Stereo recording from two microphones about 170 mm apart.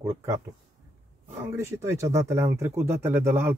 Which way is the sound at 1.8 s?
15° right (ahead or behind).